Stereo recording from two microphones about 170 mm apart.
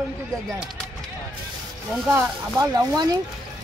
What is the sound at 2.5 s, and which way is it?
Speech, 20° right (ahead or behind).